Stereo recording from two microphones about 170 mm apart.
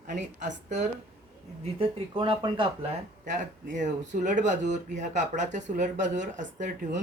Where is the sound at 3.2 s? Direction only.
50° right (ahead or behind).